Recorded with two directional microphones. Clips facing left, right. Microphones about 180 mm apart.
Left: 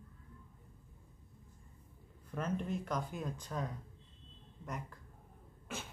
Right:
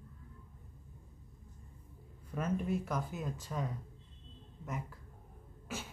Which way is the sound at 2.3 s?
5° right (ahead or behind).